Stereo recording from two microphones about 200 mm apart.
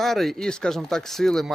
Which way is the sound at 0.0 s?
Centre (ahead or behind).